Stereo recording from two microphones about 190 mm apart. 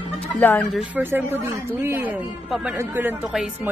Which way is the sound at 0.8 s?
10° right (ahead or behind).